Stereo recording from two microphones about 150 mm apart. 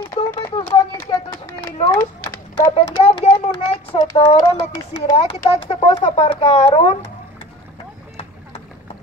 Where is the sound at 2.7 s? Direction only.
40° left (ahead or behind).